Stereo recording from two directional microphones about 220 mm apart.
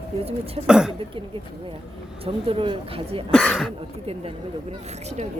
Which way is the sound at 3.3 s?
5° left (ahead or behind).